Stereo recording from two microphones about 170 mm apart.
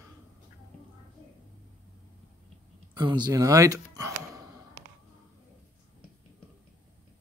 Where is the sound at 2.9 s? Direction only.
25° right (ahead or behind).